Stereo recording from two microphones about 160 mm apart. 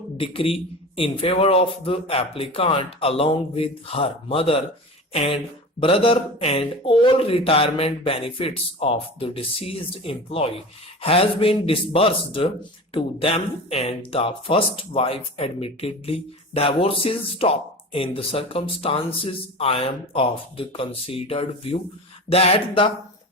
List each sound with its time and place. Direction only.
0.2 s speech: 35° left (ahead or behind)